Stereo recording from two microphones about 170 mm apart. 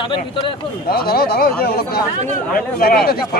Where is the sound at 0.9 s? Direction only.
65° left (ahead or behind).